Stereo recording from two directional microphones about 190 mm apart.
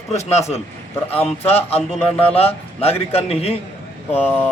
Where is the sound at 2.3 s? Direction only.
30° left (ahead or behind).